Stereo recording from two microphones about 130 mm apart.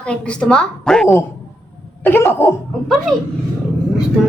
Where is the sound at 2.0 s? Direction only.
15° left (ahead or behind).